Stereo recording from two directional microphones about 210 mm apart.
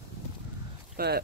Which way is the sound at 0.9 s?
50° right (ahead or behind).